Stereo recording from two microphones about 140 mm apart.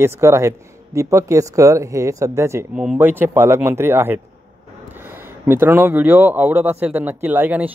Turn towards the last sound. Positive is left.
turn(degrees=-15)  # may be behind; listen again after turning